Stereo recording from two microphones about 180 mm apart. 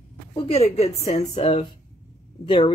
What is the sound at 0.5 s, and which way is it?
A woman's voice, 35° left (ahead or behind).